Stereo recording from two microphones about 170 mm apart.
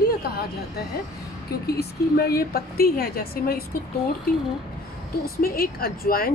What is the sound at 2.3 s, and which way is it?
Speech, 65° left (ahead or behind).